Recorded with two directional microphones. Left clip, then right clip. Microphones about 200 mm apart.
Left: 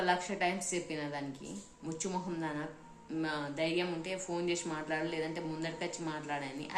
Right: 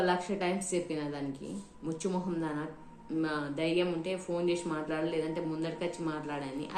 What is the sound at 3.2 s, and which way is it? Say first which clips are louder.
A woman's voice: right 2 dB; 15° left (ahead or behind).